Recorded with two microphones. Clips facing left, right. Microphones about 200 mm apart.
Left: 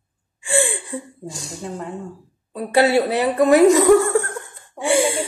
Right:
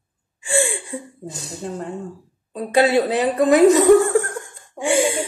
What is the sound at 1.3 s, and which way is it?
Speech, 20° right (ahead or behind).